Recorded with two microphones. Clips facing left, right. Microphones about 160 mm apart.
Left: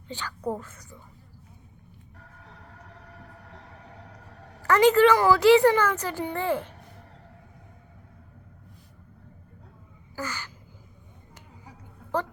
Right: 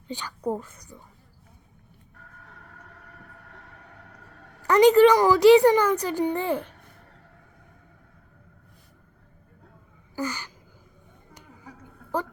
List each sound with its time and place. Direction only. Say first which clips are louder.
0.1 s a woman's voice: right 2 dB; 15° right (ahead or behind)
2.4 s vehicle: left 1 dB; 20° left (ahead or behind)
3.4 s music: left 2 dB; 20° left (ahead or behind)
4.6 s a woman's voice: right 3 dB; 15° right (ahead or behind)
10.2 s a sound: right 4 dB; 15° right (ahead or behind)